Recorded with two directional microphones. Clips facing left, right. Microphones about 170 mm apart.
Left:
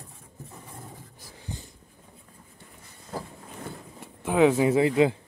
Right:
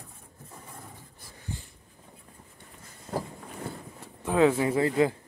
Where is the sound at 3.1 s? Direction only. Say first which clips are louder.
Right 3 dB; 30° right (ahead or behind).